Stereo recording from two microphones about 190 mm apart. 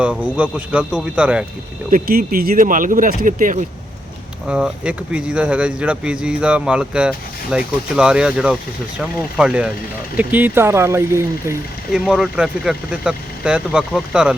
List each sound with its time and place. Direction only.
0.0 s a man's voice: 5° right (ahead or behind)
1.9 s speech: 50° right (ahead or behind)
4.4 s a man's voice: 5° right (ahead or behind)
11.9 s speech: 5° right (ahead or behind)